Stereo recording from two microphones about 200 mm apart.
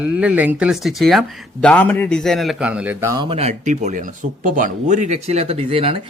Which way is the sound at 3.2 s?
30° right (ahead or behind).